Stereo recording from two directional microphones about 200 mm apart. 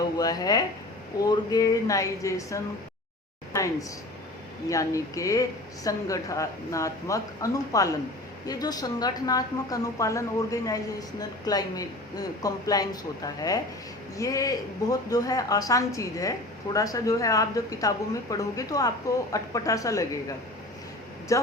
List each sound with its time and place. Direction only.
0.2 s speech: 20° left (ahead or behind)
21.3 s speech: 15° left (ahead or behind)